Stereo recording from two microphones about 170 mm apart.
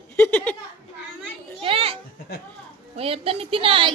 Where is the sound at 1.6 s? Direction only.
35° right (ahead or behind).